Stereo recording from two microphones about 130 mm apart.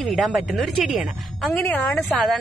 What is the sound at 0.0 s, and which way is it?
A woman's voice, centre (ahead or behind).